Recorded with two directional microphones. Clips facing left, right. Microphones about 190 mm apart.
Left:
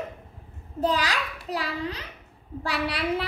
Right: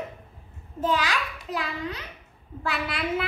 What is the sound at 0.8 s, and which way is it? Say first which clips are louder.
A child's voice: even; 35° left (ahead or behind).